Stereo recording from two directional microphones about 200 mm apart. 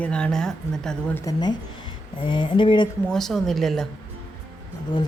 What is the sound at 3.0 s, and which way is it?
Speech, centre (ahead or behind).